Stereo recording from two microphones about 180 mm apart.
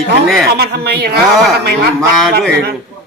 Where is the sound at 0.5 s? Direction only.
60° right (ahead or behind).